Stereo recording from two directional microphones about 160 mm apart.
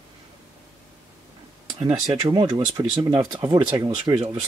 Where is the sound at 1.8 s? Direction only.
35° right (ahead or behind).